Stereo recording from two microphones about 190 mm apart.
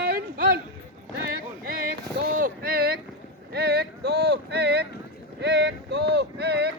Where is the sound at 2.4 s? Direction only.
50° right (ahead or behind).